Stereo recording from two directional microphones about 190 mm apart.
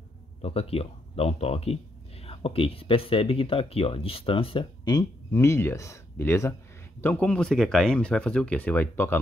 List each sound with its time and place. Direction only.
0.4 s speech: 30° left (ahead or behind); by 9.2 s 10° left (ahead or behind)